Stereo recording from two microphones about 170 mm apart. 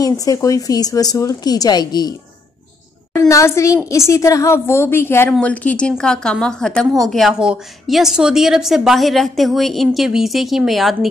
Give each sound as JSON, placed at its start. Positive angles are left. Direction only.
{"t": 0.0, "sound": "a woman's voice", "side_deg": 20}